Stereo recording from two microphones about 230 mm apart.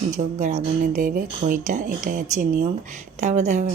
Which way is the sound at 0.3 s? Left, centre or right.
Right.